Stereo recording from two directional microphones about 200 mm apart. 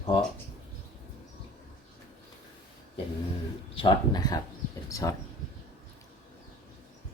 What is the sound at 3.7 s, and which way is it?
Speech, 25° left (ahead or behind).